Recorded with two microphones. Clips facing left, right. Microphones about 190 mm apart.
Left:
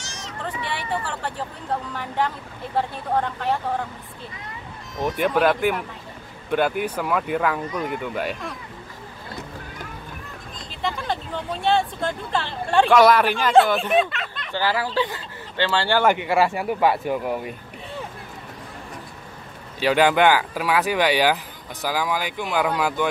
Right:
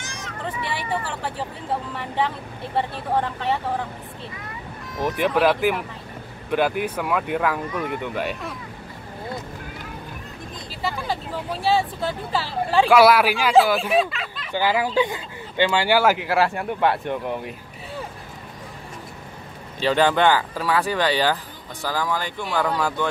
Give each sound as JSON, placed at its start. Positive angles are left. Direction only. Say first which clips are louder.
{"t": 0.0, "sound": "vehicle", "louder": "right 2 dB", "side_deg": -55}
{"t": 1.0, "sound": "speech", "louder": "right 1 dB", "side_deg": -5}
{"t": 5.0, "sound": "speech", "louder": "even", "side_deg": 0}
{"t": 10.8, "sound": "speech", "louder": "even", "side_deg": -5}
{"t": 14.5, "sound": "speech", "louder": "right 2 dB", "side_deg": -15}
{"t": 19.8, "sound": "speech", "louder": "left 1 dB", "side_deg": 10}